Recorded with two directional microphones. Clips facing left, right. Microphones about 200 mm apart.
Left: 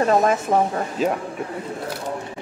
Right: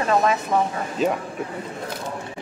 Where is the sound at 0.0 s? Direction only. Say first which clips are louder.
Left 3 dB; 40° left (ahead or behind).